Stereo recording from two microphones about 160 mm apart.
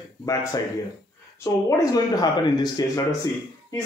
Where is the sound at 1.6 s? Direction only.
20° left (ahead or behind).